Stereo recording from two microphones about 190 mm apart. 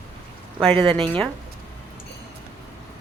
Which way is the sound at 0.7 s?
25° right (ahead or behind).